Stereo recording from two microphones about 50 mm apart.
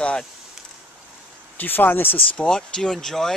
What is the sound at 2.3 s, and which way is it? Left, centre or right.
Speech, centre.